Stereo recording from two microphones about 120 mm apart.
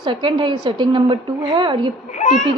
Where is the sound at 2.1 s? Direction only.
90° left.